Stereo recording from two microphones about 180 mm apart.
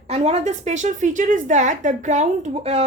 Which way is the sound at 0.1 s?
35° right (ahead or behind).